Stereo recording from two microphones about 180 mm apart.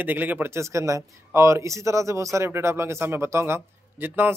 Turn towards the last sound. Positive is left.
turn(degrees=-10)  # may be behind; listen again after turning